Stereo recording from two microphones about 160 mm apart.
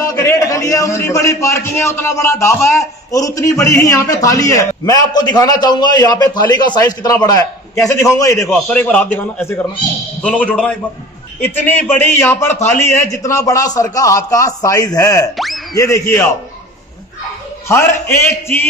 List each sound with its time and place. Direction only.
0.0 s a man's voice: 20° left (ahead or behind)
8.5 s a man's voice: 10° left (ahead or behind)
15.3 s speech: centre (ahead or behind)
15.7 s a man's voice: 20° left (ahead or behind)
17.6 s a man's voice: 15° left (ahead or behind)